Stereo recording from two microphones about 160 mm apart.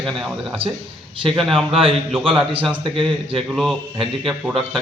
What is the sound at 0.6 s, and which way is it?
Speech, 35° right (ahead or behind).